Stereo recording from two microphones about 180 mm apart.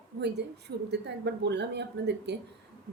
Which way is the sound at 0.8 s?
70° right (ahead or behind).